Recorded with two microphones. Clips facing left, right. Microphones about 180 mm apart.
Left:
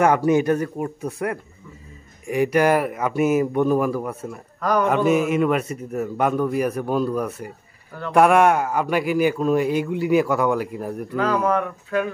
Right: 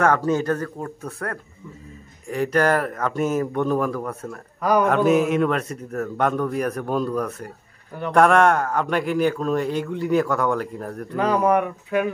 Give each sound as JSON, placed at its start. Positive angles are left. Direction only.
{"t": 0.0, "sound": "a man's voice", "side_deg": 15}
{"t": 4.6, "sound": "speech", "side_deg": -10}
{"t": 4.8, "sound": "a man's voice", "side_deg": 0}
{"t": 11.1, "sound": "speech", "side_deg": -15}